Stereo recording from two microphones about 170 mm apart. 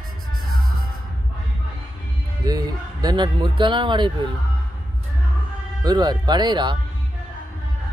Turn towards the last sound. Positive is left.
turn(degrees=-25)  # may be behind; listen again after turning